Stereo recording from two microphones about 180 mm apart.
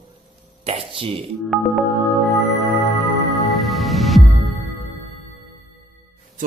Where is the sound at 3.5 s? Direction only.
Centre (ahead or behind).